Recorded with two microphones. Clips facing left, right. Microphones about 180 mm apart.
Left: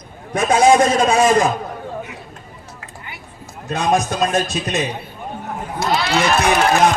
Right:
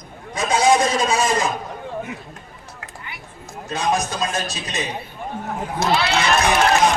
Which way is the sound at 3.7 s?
55° left (ahead or behind).